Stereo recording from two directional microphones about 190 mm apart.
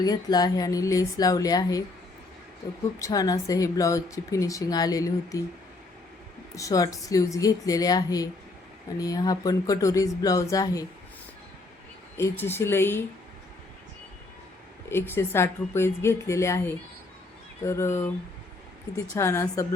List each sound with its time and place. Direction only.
0.0 s speech: 20° left (ahead or behind)
3.0 s speech: 20° left (ahead or behind)
6.6 s speech: 20° left (ahead or behind)
12.1 s speech: 10° left (ahead or behind)
15.1 s speech: 15° left (ahead or behind)
19.1 s speech: 15° left (ahead or behind)